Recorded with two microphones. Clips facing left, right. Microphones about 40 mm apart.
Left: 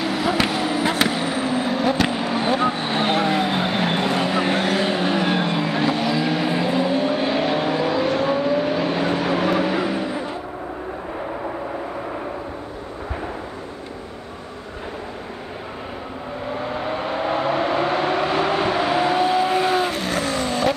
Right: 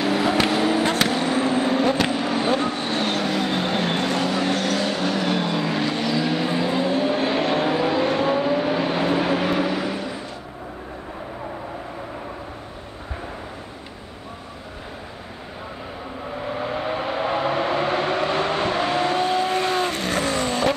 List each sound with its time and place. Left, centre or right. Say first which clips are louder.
0.0 s skateboard: right 1 dB; centre
2.1 s vehicle: left 1 dB; centre
9.8 s a sound: left 4 dB; centre
16.4 s vehicle: even; centre